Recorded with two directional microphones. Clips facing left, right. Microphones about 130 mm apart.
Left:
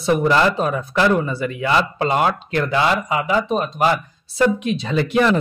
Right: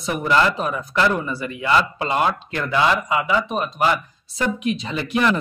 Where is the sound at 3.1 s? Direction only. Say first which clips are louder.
Left 2 dB; 30° left (ahead or behind).